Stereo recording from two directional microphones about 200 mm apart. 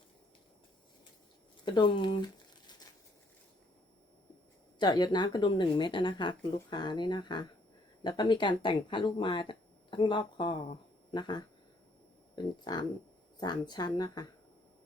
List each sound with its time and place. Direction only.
1.6 s a sound: 25° left (ahead or behind)
4.8 s speech: 20° left (ahead or behind)
13.4 s speech: 20° left (ahead or behind)